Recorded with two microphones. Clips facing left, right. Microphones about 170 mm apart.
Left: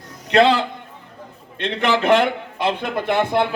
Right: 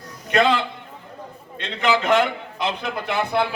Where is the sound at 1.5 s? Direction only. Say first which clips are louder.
Left 2 dB; 60° left (ahead or behind).